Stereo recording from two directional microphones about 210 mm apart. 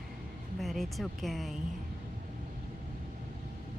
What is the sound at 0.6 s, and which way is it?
A woman's voice, centre (ahead or behind).